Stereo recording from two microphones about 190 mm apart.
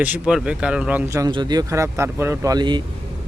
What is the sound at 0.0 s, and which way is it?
Speech, 5° right (ahead or behind).